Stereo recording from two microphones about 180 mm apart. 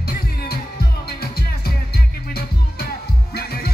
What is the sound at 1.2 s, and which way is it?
Music, 60° left (ahead or behind).